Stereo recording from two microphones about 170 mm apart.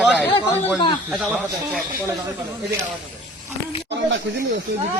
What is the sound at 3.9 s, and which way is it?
Speech, 90° right.